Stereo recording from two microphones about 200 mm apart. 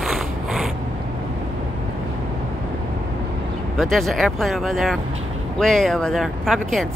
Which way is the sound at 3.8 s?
Centre (ahead or behind).